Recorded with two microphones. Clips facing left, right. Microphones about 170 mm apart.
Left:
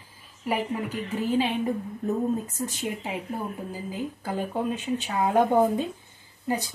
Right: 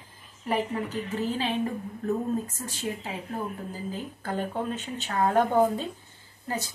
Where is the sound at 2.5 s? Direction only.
15° left (ahead or behind).